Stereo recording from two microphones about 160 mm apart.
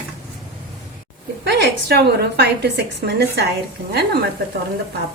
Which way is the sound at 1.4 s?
90° right.